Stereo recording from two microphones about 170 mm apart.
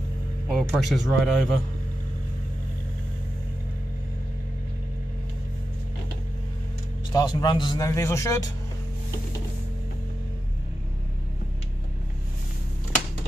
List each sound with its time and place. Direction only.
0.5 s a man's voice: centre (ahead or behind)
7.1 s speech: 20° left (ahead or behind)